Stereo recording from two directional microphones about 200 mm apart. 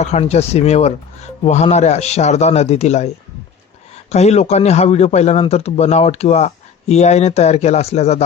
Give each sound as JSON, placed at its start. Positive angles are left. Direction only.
{"t": 0.0, "sound": "a man's voice", "side_deg": 35}
{"t": 4.1, "sound": "a man's voice", "side_deg": 35}